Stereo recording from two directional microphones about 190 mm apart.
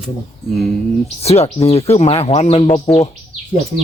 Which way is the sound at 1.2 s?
35° left (ahead or behind).